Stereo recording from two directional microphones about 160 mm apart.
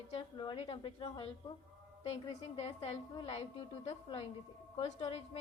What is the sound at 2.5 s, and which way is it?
A woman's voice, 40° left (ahead or behind).